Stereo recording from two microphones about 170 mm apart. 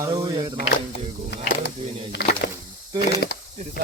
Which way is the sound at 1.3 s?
75° left (ahead or behind).